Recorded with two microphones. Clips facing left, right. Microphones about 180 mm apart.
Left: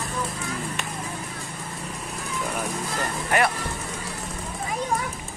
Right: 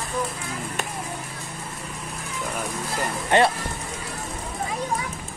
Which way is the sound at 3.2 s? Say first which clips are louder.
Right 4 dB; 25° right (ahead or behind).